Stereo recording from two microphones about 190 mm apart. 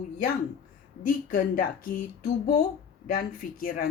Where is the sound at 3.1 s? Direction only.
50° left (ahead or behind).